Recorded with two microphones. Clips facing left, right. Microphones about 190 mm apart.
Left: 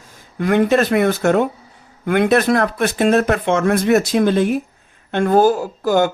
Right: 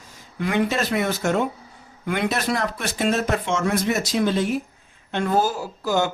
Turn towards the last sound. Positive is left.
turn(degrees=55)  # may be behind; listen again after turning